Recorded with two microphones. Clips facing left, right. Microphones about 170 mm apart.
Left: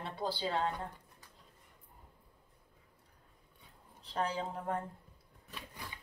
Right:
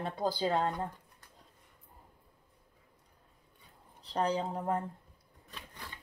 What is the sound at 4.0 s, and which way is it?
Speech, 35° right (ahead or behind).